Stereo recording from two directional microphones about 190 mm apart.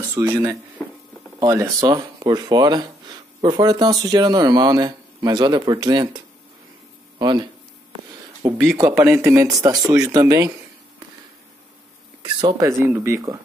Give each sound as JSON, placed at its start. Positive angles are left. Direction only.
{"t": 0.1, "sound": "speech", "side_deg": -15}
{"t": 8.6, "sound": "speech", "side_deg": -15}
{"t": 12.2, "sound": "speech", "side_deg": -25}